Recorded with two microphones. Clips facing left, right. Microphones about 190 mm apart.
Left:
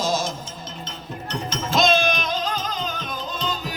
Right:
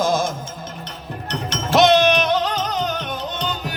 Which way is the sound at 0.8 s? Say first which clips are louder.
Right 2 dB; 70° right (ahead or behind).